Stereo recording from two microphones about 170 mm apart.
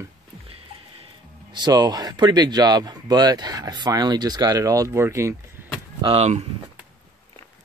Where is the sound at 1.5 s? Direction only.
25° right (ahead or behind).